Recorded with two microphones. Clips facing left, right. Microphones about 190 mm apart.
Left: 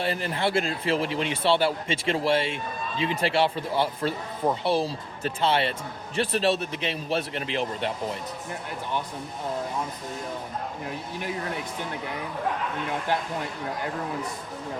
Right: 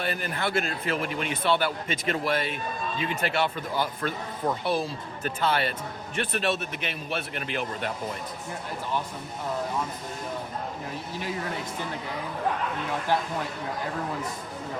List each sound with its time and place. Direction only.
0.0 s speech: 30° left (ahead or behind)